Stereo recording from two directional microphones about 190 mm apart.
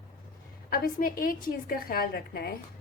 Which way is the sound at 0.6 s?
50° left (ahead or behind).